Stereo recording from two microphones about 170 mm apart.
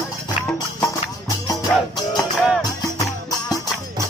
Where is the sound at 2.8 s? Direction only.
20° left (ahead or behind).